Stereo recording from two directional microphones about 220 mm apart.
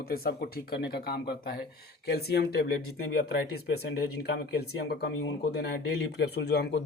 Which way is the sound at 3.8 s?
45° left (ahead or behind).